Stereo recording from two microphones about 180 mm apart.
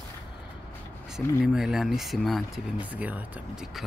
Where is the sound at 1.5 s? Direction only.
Centre (ahead or behind).